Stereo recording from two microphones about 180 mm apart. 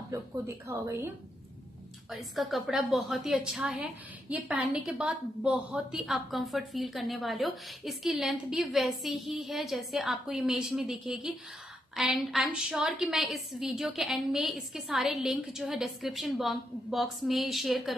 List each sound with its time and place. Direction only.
0.1 s speech: 15° right (ahead or behind)
2.0 s a woman's voice: centre (ahead or behind)